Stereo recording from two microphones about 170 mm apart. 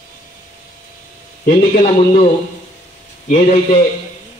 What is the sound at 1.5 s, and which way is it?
Speech, 40° left (ahead or behind).